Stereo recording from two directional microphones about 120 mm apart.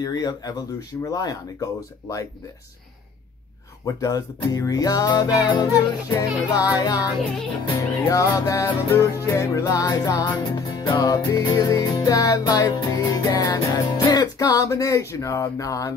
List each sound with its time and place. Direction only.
0.0 s music: 35° left (ahead or behind)
3.8 s music: 30° left (ahead or behind)
7.8 s music: 30° left (ahead or behind)